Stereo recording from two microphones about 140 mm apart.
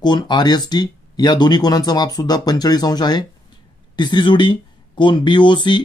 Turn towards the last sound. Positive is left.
turn(degrees=35)  # may be behind; listen again after turning